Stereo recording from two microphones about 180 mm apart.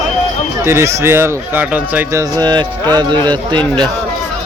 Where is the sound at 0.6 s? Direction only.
15° right (ahead or behind).